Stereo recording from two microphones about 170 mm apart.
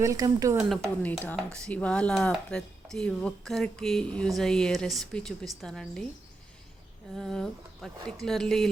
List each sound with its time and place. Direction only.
0.0 s speech: 20° right (ahead or behind)
0.7 s speech: centre (ahead or behind)
7.2 s speech: 5° left (ahead or behind)